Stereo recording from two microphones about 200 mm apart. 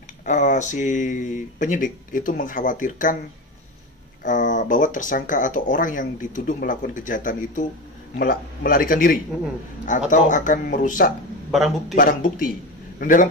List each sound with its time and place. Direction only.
0.2 s speech: 40° left (ahead or behind)
4.2 s a man's voice: 40° left (ahead or behind)